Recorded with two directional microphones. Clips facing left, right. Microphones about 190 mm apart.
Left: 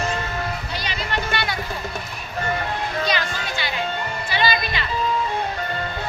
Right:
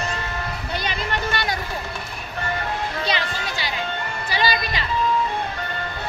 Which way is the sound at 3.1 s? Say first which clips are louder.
Left 1 dB; 30° right (ahead or behind).